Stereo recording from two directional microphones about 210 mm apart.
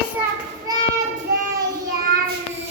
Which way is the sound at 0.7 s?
15° right (ahead or behind).